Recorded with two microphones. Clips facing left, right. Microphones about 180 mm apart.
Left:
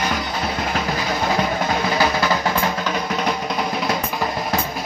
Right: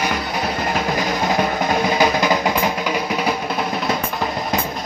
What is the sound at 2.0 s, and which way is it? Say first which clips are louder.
Music: right 2 dB; 15° right (ahead or behind).